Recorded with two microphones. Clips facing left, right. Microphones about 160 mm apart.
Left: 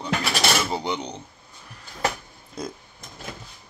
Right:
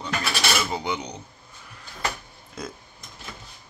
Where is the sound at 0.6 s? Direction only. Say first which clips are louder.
Left 1 dB; 30° left (ahead or behind).